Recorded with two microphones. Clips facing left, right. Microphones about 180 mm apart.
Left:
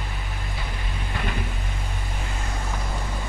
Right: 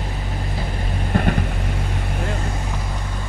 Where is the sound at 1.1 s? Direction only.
50° right (ahead or behind).